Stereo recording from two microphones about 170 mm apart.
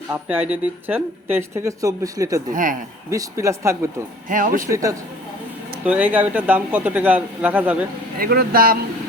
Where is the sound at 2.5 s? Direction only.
50° right (ahead or behind).